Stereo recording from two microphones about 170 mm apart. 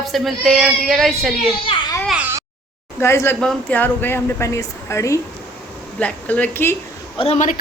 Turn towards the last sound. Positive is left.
turn(degrees=45)  # may be behind; listen again after turning